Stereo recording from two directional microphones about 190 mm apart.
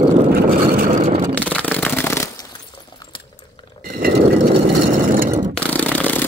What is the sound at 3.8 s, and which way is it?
Mechanisms, 50° right (ahead or behind).